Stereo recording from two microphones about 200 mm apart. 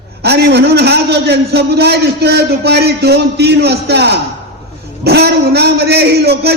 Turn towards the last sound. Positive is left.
turn(degrees=-55)  # may be behind; listen again after turning